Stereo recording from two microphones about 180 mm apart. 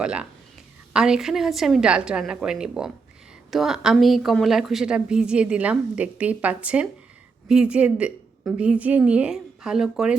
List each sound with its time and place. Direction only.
0.0 s a woman's voice: 5° right (ahead or behind)